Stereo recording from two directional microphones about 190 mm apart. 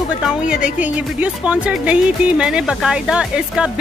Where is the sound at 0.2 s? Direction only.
5° right (ahead or behind).